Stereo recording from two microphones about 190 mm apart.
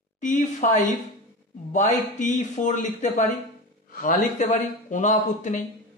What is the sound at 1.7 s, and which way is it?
Speech, 40° left (ahead or behind).